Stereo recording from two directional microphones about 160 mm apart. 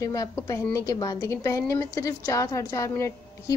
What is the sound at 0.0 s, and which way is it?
A woman's voice, 20° left (ahead or behind).